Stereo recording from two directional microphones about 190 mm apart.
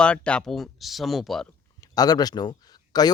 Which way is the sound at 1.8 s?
20° left (ahead or behind).